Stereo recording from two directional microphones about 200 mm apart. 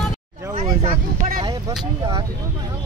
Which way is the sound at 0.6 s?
25° right (ahead or behind).